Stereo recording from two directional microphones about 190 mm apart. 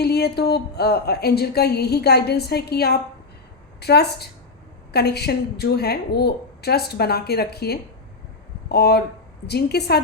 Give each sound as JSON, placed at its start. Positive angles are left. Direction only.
{"t": 0.0, "sound": "a woman's voice", "side_deg": 55}